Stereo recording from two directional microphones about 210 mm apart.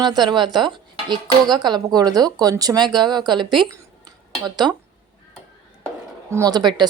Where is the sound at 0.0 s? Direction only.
20° right (ahead or behind).